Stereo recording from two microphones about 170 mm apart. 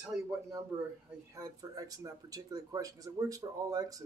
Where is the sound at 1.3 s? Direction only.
20° right (ahead or behind).